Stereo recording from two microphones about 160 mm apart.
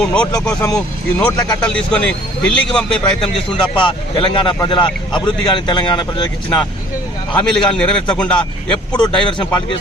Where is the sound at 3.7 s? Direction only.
30° left (ahead or behind).